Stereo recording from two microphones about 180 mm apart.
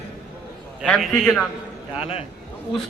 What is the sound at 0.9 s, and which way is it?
Speech, centre (ahead or behind).